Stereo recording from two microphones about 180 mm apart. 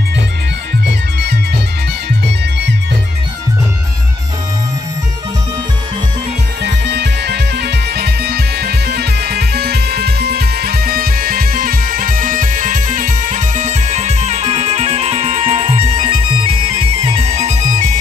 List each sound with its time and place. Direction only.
6.6 s music: 75° right (ahead or behind); by 17.9 s 40° right (ahead or behind)